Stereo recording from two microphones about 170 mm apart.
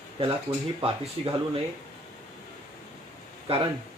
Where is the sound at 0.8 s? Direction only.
35° right (ahead or behind).